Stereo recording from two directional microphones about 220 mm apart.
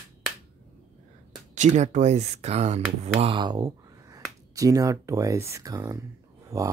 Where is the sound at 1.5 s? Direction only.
35° right (ahead or behind); by 6.6 s 15° right (ahead or behind).